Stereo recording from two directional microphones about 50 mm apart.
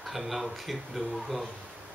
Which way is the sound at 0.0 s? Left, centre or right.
Centre.